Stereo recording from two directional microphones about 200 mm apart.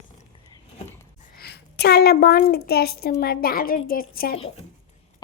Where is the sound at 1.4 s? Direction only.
55° left (ahead or behind).